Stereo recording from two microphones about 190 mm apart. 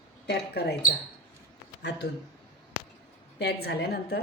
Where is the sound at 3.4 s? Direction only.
60° left (ahead or behind).